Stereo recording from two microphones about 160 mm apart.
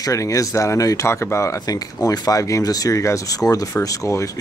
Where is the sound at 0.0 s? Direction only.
20° left (ahead or behind).